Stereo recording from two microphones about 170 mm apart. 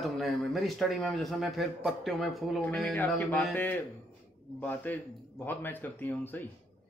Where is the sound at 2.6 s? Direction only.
10° left (ahead or behind).